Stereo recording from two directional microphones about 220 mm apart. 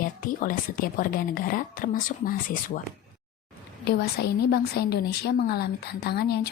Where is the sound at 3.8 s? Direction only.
45° left (ahead or behind).